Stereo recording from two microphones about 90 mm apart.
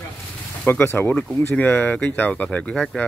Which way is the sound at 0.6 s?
25° left (ahead or behind).